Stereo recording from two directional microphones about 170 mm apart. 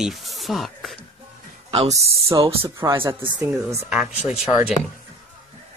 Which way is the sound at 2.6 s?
15° right (ahead or behind).